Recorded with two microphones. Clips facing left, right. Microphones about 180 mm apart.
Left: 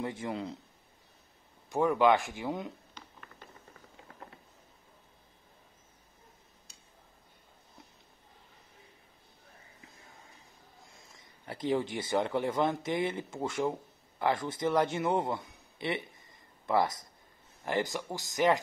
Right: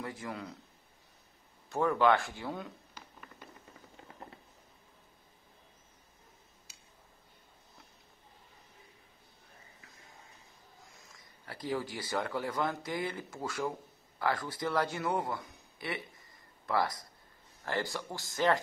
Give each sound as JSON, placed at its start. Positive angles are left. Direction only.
{"t": 0.0, "sound": "a man's voice", "side_deg": 25}
{"t": 1.7, "sound": "speech", "side_deg": 15}
{"t": 3.0, "sound": "a sound", "side_deg": -10}
{"t": 10.9, "sound": "a man's voice", "side_deg": 25}